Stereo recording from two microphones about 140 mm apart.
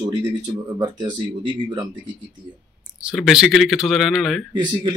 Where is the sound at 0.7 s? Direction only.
30° right (ahead or behind).